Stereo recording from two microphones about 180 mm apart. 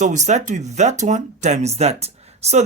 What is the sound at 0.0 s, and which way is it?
Speech, 40° right (ahead or behind).